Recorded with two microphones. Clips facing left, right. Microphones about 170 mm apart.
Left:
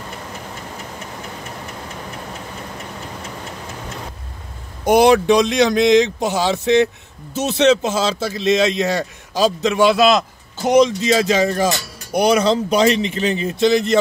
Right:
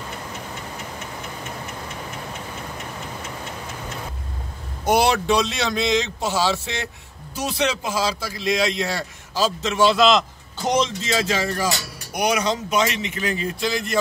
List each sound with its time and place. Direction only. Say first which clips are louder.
4.8 s a man's voice: left 7 dB; 15° left (ahead or behind)